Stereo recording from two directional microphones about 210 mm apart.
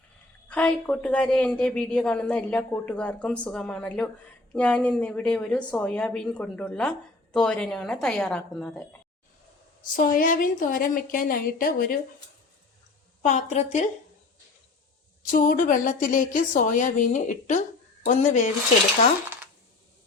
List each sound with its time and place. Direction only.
0.4 s a woman's voice: 5° left (ahead or behind)
9.9 s a woman's voice: 40° left (ahead or behind)
13.2 s a woman's voice: 35° left (ahead or behind)
15.3 s a woman's voice: 40° left (ahead or behind)